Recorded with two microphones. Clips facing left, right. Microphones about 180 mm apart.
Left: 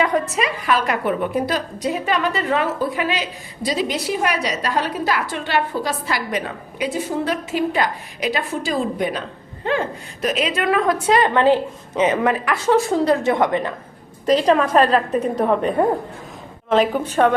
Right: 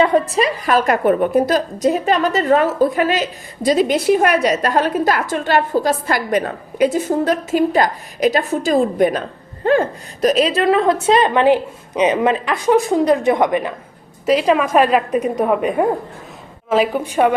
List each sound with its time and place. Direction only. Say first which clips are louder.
0.0 s a woman's voice: right 5 dB; 30° right (ahead or behind); by 17.3 s 10° right (ahead or behind)